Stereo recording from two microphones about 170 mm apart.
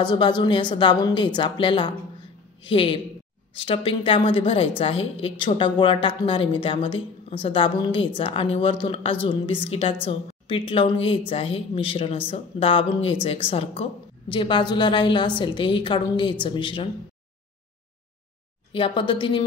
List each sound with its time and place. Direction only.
0.0 s a woman's voice: 25° left (ahead or behind)
18.7 s a woman's voice: 30° left (ahead or behind)